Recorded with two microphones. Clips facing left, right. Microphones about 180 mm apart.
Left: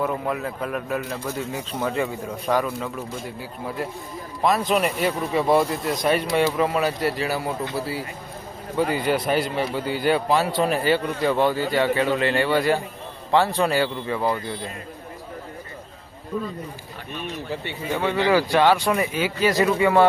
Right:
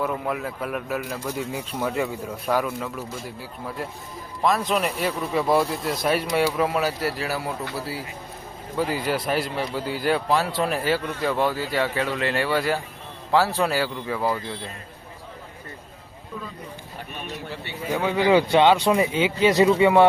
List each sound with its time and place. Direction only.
0.0 s a man's voice: 5° right (ahead or behind)
4.4 s a man's voice: centre (ahead or behind)
17.9 s speech: 15° right (ahead or behind)